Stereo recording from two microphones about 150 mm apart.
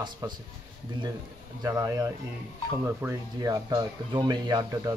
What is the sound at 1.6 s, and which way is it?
Speech, 20° right (ahead or behind).